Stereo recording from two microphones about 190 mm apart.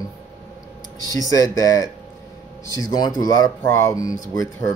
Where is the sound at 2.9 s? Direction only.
20° left (ahead or behind).